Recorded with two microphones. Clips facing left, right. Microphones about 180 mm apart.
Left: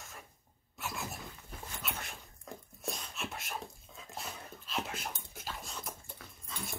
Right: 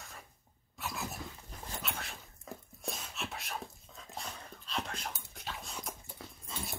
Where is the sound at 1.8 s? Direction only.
Centre (ahead or behind).